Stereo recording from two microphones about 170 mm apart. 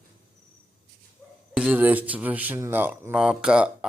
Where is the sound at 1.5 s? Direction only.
10° right (ahead or behind).